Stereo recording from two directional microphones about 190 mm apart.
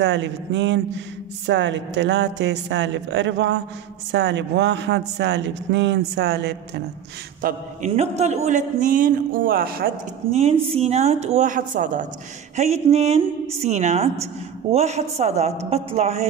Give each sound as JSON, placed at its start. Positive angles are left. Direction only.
{"t": 0.0, "sound": "speech", "side_deg": -70}
{"t": 7.4, "sound": "a man's voice", "side_deg": -50}
{"t": 7.9, "sound": "a man's voice", "side_deg": -35}
{"t": 10.3, "sound": "a woman's voice", "side_deg": -30}